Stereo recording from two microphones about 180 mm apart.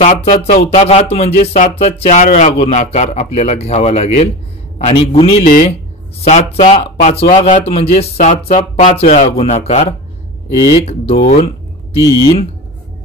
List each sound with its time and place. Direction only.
0.6 s a man's voice: 35° left (ahead or behind)
5.4 s speech: 50° left (ahead or behind)
6.2 s a man's voice: 35° left (ahead or behind)
9.0 s a man's voice: 45° left (ahead or behind); by 12.4 s 30° left (ahead or behind)